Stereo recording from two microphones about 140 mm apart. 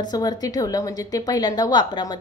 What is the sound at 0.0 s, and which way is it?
A woman's voice, 30° left (ahead or behind).